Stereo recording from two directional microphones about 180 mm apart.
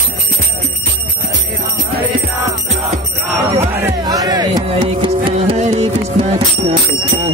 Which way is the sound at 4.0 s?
20° right (ahead or behind).